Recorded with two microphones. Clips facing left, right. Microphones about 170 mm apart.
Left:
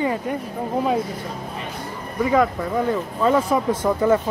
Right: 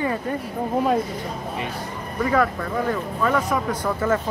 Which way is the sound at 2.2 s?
15° left (ahead or behind).